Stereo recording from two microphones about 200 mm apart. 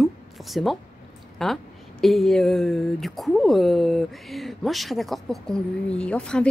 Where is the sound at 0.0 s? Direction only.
Centre (ahead or behind).